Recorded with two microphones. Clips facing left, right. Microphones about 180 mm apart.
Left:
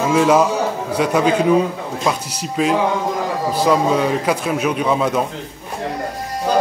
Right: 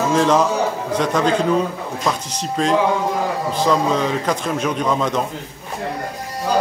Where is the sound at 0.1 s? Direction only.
10° left (ahead or behind).